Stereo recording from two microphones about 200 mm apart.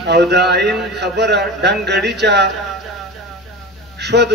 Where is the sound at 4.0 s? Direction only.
55° right (ahead or behind).